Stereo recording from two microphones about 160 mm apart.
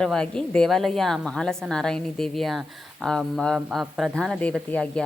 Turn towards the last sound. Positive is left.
turn(degrees=5)  # may be behind; listen again after turning